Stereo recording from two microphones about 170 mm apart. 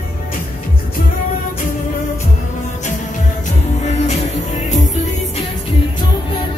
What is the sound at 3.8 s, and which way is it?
Music, 40° left (ahead or behind).